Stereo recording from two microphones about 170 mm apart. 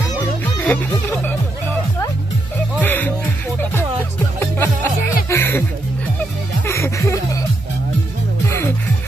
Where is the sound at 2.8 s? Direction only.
10° left (ahead or behind).